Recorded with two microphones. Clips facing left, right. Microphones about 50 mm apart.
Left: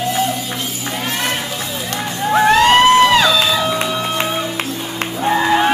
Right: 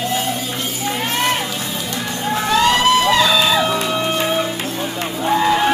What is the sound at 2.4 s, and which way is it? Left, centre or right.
Music, left.